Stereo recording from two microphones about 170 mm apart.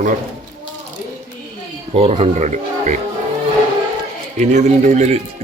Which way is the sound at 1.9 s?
35° right (ahead or behind).